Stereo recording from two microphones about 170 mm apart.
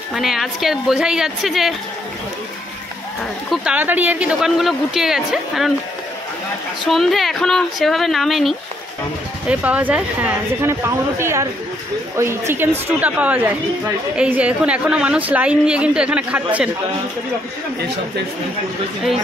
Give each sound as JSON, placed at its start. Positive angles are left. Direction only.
{"t": 0.1, "sound": "speech", "side_deg": 0}
{"t": 3.4, "sound": "speech", "side_deg": -5}
{"t": 6.8, "sound": "a woman's voice", "side_deg": 0}
{"t": 17.7, "sound": "speech", "side_deg": -80}